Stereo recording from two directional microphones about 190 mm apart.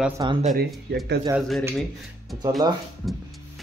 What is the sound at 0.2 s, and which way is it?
Speech, 20° right (ahead or behind).